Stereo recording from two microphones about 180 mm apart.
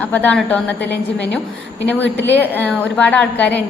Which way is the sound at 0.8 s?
75° left (ahead or behind).